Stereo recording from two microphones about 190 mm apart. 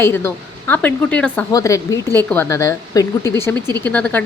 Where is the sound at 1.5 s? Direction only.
15° left (ahead or behind).